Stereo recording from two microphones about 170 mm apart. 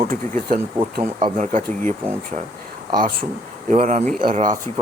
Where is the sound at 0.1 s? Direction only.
55° right (ahead or behind).